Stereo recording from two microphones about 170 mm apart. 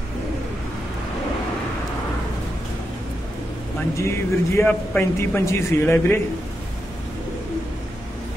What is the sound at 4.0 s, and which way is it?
A man's voice, 15° left (ahead or behind).